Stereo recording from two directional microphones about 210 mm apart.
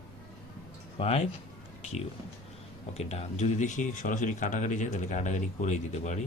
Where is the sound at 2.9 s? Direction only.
30° left (ahead or behind).